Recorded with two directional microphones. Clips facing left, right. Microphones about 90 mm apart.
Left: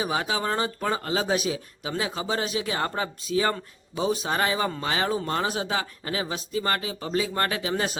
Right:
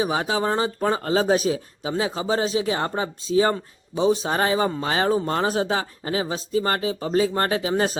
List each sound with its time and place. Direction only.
0.0 s speech: 30° right (ahead or behind)